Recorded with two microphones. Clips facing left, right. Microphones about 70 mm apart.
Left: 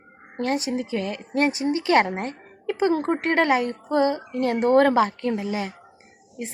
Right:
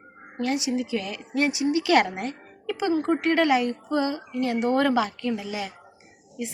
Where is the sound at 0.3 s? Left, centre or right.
Left.